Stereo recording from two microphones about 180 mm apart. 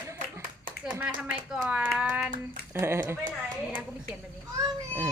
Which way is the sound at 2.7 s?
15° right (ahead or behind).